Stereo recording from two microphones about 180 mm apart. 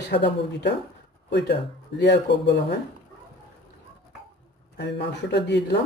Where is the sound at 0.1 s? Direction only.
70° left (ahead or behind).